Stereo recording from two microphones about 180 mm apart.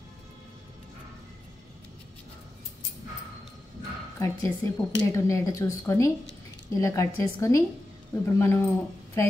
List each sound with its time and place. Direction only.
4.2 s speech: 15° left (ahead or behind)